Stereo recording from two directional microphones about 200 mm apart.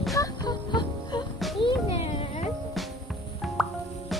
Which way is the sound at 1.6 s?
30° left (ahead or behind).